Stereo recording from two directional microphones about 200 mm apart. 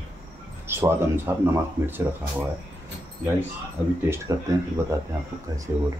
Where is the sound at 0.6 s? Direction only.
10° right (ahead or behind).